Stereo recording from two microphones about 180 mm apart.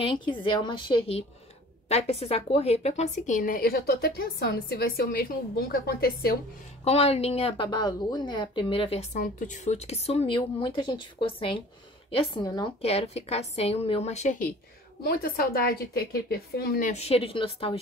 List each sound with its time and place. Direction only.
0.0 s a woman's voice: 30° left (ahead or behind); by 6.3 s 60° left (ahead or behind)
6.8 s speech: 35° left (ahead or behind)
9.1 s a woman's voice: 45° left (ahead or behind)
15.0 s a woman's voice: 55° left (ahead or behind)
16.9 s a woman's voice: 35° left (ahead or behind)